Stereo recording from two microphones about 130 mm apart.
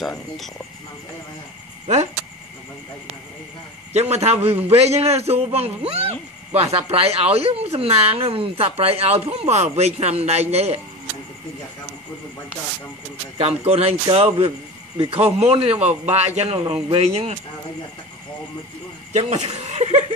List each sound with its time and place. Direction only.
3.9 s a man's voice: 55° right (ahead or behind)
13.4 s a man's voice: 55° right (ahead or behind)
19.1 s speech: 60° right (ahead or behind)